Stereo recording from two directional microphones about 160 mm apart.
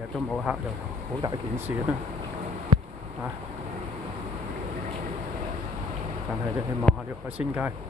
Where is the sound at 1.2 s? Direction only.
20° right (ahead or behind).